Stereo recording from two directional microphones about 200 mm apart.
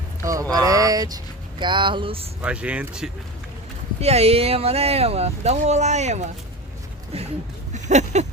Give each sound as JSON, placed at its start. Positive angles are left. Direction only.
{"t": 0.2, "sound": "speech", "side_deg": -15}
{"t": 2.4, "sound": "speech", "side_deg": -5}
{"t": 4.0, "sound": "speech", "side_deg": -30}
{"t": 7.7, "sound": "a sound", "side_deg": -35}